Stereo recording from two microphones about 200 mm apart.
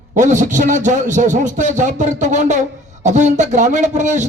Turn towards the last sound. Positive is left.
turn(degrees=-35)  # may be behind; listen again after turning